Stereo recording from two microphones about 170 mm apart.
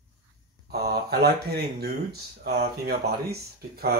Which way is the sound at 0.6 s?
65° right (ahead or behind).